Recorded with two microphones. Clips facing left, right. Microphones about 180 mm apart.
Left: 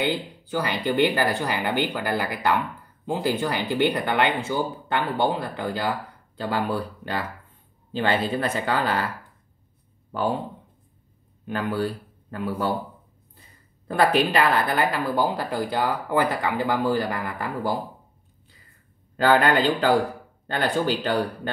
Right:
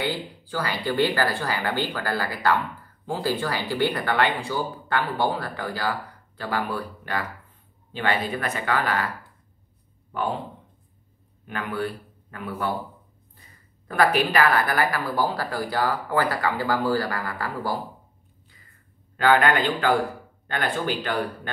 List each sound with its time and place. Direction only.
0.0 s speech: 20° left (ahead or behind)
11.5 s a man's voice: 30° left (ahead or behind)
13.8 s speech: 30° left (ahead or behind)
19.1 s speech: 35° left (ahead or behind)